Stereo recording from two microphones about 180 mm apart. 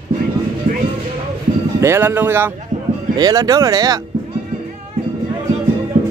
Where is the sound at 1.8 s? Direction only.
15° right (ahead or behind).